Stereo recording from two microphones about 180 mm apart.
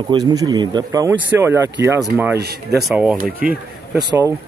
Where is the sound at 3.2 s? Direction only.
55° right (ahead or behind).